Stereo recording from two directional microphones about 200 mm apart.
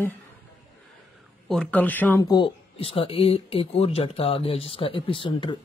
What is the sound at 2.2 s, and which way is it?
Speech, 25° left (ahead or behind).